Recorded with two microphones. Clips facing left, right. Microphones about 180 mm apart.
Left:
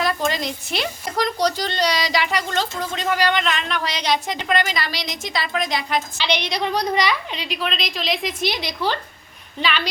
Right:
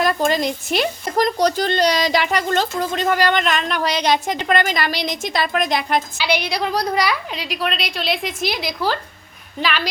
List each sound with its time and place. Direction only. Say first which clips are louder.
0.0 s speech: right 4 dB; 45° right (ahead or behind)
6.1 s a woman's voice: right 2 dB; 5° right (ahead or behind)